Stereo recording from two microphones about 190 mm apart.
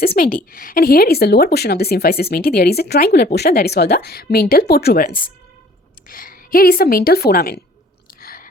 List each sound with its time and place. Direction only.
0.5 s a woman's voice: 50° left (ahead or behind)
8.2 s chewing: 50° left (ahead or behind)